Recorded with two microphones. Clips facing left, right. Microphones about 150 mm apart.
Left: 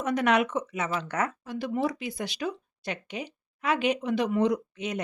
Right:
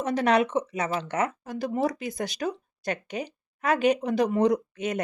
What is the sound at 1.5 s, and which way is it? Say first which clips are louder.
Speech: right 2 dB; 40° right (ahead or behind).